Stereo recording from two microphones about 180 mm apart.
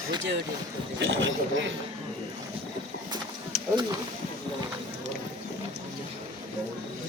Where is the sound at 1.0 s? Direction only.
90° right.